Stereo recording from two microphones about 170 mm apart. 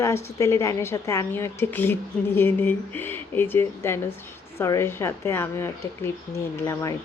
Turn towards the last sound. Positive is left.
turn(degrees=20)  # may be behind; listen again after turning